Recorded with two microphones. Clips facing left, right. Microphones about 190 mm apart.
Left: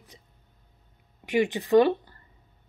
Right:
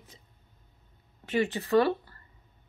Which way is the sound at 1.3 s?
15° left (ahead or behind).